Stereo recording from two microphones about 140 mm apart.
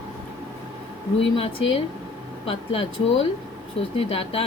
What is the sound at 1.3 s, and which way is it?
A woman's voice, 45° left (ahead or behind).